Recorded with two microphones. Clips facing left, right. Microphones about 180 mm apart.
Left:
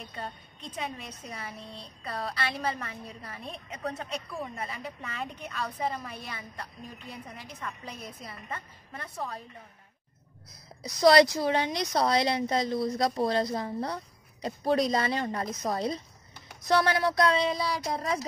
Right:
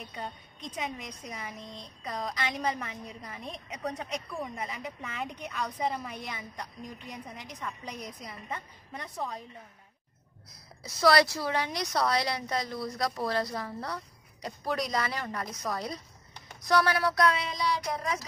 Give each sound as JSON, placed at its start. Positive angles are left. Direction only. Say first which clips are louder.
{"t": 0.0, "sound": "a woman's voice", "louder": "even", "side_deg": -15}
{"t": 10.8, "sound": "a woman's voice", "louder": "left 4 dB", "side_deg": 15}